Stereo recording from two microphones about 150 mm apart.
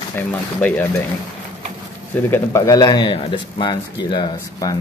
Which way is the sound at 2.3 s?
20° left (ahead or behind).